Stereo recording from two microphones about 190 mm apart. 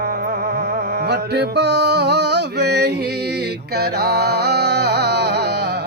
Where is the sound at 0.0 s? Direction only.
50° right (ahead or behind).